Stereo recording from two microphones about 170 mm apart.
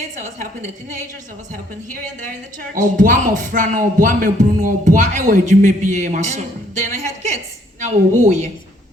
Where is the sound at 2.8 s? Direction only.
50° right (ahead or behind).